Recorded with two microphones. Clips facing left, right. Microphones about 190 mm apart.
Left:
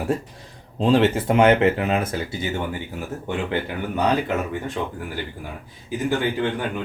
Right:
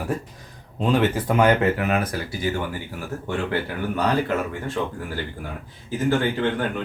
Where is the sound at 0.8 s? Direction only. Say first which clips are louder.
Left 3 dB; 30° left (ahead or behind).